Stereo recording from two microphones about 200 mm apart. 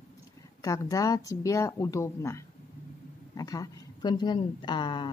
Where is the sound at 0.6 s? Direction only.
15° left (ahead or behind).